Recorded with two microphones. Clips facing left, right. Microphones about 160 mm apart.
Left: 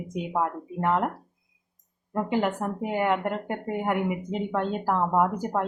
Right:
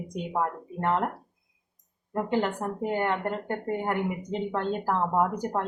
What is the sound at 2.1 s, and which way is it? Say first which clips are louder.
Speech: left 1 dB; centre (ahead or behind).